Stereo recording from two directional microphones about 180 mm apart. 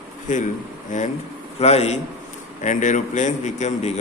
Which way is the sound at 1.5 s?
35° left (ahead or behind).